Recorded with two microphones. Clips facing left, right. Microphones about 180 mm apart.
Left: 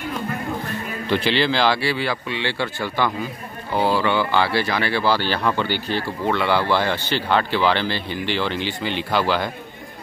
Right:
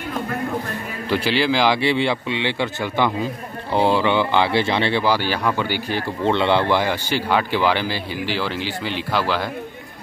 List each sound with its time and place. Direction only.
1.1 s speech: 10° right (ahead or behind); by 5.0 s 25° right (ahead or behind)
5.0 s speech: 15° right (ahead or behind)
6.2 s speech: 25° right (ahead or behind); by 9.5 s centre (ahead or behind)